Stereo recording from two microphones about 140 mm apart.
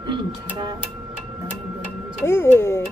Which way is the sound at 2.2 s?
15° left (ahead or behind).